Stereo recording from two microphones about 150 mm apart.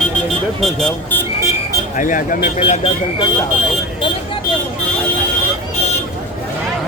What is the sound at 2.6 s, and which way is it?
Speech, 40° left (ahead or behind).